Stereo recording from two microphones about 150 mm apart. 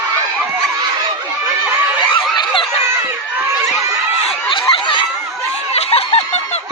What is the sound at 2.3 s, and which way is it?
Snicker, 35° left (ahead or behind).